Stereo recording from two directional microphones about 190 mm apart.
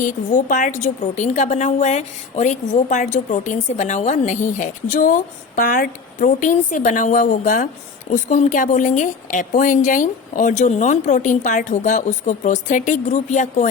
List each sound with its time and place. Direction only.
0.0 s a woman's voice: 45° left (ahead or behind)